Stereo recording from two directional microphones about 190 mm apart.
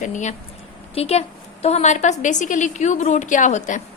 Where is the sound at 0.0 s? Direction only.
40° left (ahead or behind).